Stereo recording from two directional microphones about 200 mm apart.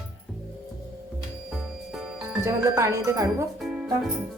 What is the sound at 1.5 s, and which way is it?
Music, centre (ahead or behind).